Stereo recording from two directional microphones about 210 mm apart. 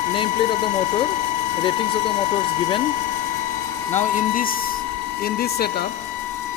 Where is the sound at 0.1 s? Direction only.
25° left (ahead or behind).